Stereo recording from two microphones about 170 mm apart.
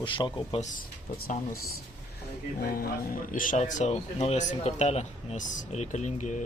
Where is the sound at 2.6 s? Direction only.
60° left (ahead or behind).